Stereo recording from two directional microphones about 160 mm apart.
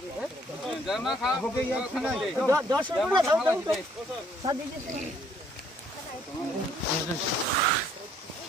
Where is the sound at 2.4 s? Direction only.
20° right (ahead or behind).